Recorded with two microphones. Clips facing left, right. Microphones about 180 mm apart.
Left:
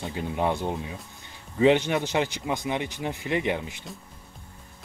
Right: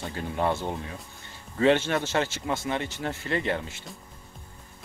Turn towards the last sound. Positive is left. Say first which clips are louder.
# left 2 dB
turn(degrees=15)  # may be behind; listen again after turning